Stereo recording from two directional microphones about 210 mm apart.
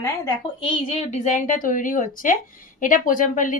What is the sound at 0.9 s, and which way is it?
Speech, 35° left (ahead or behind).